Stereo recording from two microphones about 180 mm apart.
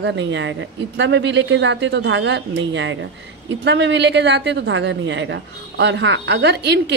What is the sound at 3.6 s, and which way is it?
A woman's voice, 80° right.